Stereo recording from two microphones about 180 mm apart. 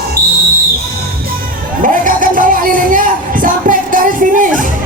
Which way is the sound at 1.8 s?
45° right (ahead or behind).